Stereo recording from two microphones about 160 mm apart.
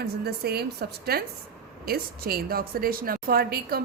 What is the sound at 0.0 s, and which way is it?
Speech, 80° right.